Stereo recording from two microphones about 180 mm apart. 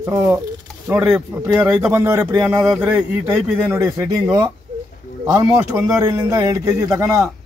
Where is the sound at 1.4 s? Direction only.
15° right (ahead or behind).